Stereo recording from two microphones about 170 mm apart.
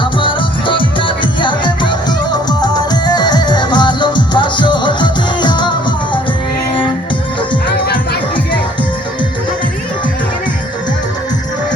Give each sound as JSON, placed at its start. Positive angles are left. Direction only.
{"t": 0.0, "sound": "music", "side_deg": 30}